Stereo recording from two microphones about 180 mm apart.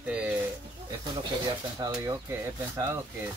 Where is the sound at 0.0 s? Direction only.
10° right (ahead or behind).